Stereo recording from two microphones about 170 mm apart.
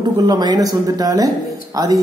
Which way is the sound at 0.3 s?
25° right (ahead or behind).